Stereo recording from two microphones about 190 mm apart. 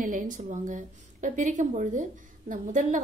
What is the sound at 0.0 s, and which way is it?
A woman's voice, 45° right (ahead or behind).